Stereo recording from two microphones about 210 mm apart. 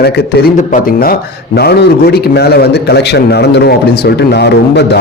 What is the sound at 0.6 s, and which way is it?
A man's voice, 35° left (ahead or behind).